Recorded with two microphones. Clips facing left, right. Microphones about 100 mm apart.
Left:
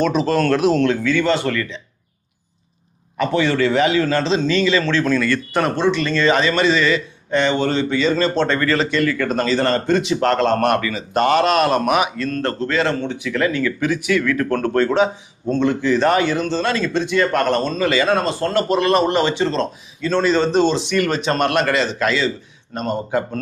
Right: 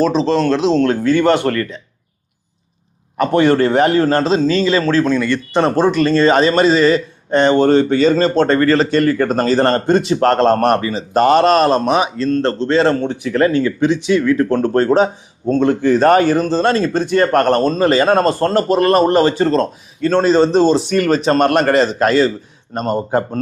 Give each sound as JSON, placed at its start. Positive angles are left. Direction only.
{"t": 0.0, "sound": "speech", "side_deg": -30}
{"t": 0.9, "sound": "a man's voice", "side_deg": -45}
{"t": 3.2, "sound": "a man's voice", "side_deg": -50}
{"t": 5.0, "sound": "speech", "side_deg": -20}
{"t": 5.7, "sound": "speech", "side_deg": -45}